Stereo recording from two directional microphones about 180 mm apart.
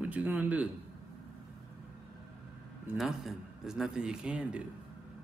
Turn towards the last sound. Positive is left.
turn(degrees=-5)  # may be behind; listen again after turning